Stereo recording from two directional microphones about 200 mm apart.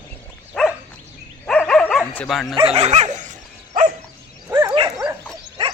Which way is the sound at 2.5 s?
30° right (ahead or behind).